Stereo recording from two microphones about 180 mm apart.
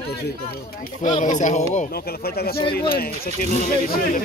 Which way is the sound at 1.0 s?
40° left (ahead or behind).